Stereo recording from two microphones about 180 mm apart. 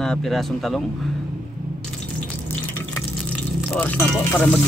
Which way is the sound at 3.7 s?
10° left (ahead or behind).